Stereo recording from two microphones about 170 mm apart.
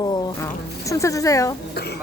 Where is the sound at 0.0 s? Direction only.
25° left (ahead or behind).